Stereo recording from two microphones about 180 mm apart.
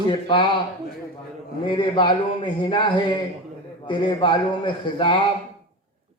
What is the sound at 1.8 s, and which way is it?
Speech, 25° left (ahead or behind).